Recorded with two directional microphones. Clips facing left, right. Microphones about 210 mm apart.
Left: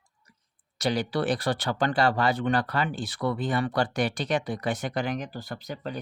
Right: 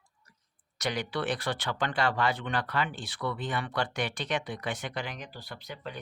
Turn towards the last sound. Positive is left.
turn(degrees=40)  # may be behind; listen again after turning